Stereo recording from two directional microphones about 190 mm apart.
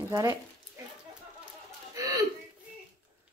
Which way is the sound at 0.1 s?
20° right (ahead or behind).